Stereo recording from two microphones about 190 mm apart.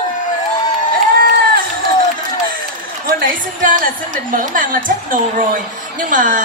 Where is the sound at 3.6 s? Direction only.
45° right (ahead or behind).